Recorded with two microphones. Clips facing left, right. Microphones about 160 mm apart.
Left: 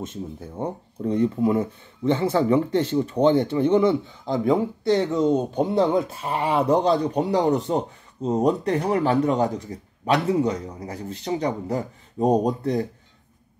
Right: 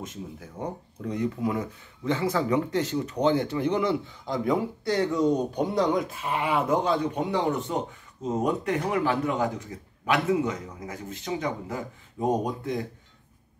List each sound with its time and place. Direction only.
0.0 s speech: 30° left (ahead or behind)